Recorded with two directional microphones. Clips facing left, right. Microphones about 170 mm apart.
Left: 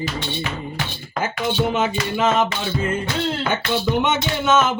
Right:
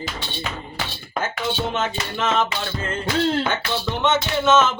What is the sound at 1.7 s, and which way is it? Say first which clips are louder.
Speech: left 4 dB; 10° left (ahead or behind).